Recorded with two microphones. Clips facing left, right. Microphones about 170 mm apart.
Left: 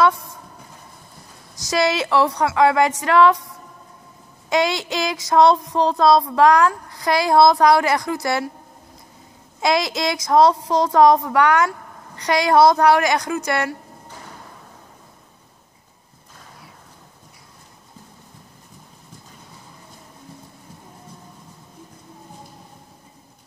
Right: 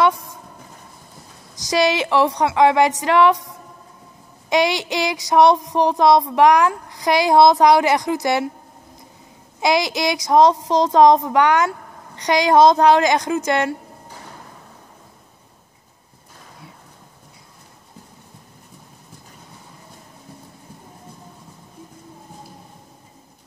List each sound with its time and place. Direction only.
1.6 s child singing: 15° right (ahead or behind)
4.5 s child singing: 15° right (ahead or behind)
9.6 s speech: 15° right (ahead or behind)